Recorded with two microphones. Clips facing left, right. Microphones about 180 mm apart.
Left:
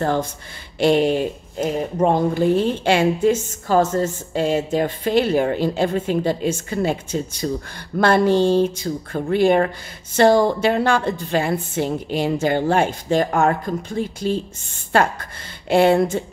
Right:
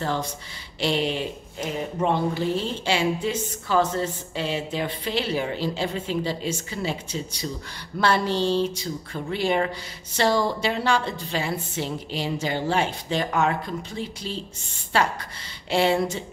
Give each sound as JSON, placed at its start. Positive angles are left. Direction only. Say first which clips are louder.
{"t": 0.0, "sound": "speech", "louder": "left 6 dB", "side_deg": 50}